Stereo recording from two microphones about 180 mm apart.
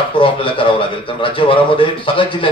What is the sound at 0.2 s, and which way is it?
A man's voice, 30° left (ahead or behind).